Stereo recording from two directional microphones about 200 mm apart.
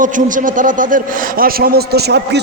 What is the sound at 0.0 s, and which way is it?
A man's voice, 40° right (ahead or behind).